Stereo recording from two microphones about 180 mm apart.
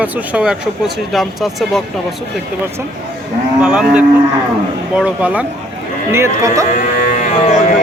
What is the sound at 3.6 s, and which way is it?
Speech, 5° right (ahead or behind).